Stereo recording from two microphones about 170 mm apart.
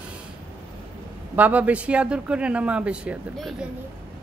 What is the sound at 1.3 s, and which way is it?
Speech, 10° right (ahead or behind).